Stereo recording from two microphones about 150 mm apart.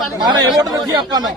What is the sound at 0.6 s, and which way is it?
Speech, 25° right (ahead or behind).